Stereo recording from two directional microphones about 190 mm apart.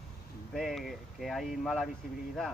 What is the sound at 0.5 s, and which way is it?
Speech, centre (ahead or behind).